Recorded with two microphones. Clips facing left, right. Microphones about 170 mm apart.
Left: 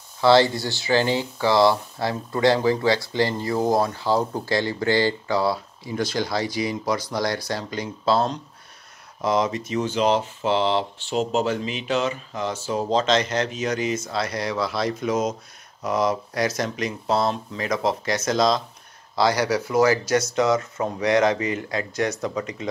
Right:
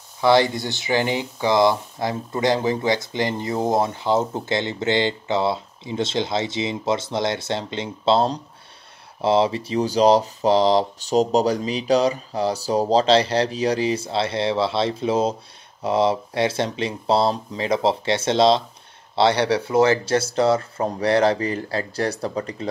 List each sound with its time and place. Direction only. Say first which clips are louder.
0.2 s speech: even; 15° right (ahead or behind); by 22.7 s 35° right (ahead or behind)